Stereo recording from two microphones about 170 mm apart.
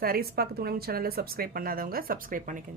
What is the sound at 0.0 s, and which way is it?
Speech, 65° right (ahead or behind).